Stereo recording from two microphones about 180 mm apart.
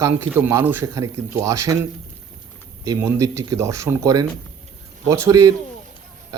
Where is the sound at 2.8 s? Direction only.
15° right (ahead or behind).